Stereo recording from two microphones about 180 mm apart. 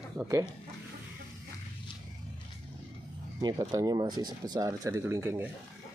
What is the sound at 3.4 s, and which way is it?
Speech, 20° right (ahead or behind).